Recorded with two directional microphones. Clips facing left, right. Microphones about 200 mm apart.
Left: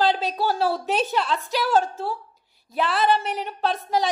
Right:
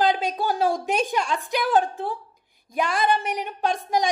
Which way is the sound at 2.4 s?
50° right (ahead or behind).